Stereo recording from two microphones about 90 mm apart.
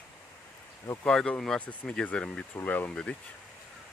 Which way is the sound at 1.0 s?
10° left (ahead or behind).